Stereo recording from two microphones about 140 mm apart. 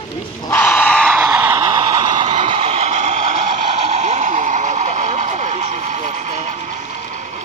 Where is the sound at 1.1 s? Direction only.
15° right (ahead or behind).